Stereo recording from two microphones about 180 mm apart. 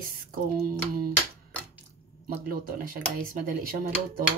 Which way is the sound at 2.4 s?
55° right (ahead or behind).